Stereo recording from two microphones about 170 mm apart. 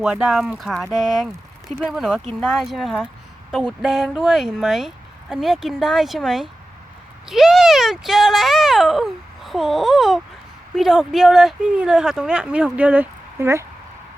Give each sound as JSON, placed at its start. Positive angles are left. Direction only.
{"t": 0.0, "sound": "speech", "side_deg": -5}